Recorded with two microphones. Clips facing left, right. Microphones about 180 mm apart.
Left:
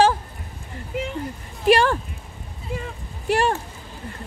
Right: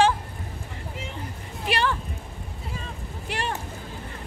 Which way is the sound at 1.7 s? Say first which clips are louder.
Left 9 dB; 45° left (ahead or behind).